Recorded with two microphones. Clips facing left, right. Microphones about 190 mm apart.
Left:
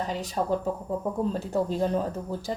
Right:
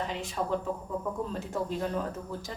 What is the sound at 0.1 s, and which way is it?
A woman's voice, 40° left (ahead or behind).